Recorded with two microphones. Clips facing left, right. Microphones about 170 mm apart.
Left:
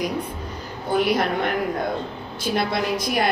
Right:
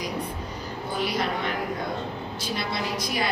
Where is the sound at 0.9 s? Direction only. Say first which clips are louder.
Left 7 dB; 55° left (ahead or behind).